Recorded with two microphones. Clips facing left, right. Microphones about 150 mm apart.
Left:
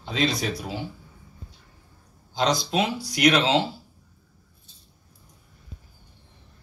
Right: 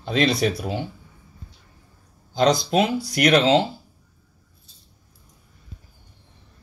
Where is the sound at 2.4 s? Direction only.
50° right (ahead or behind).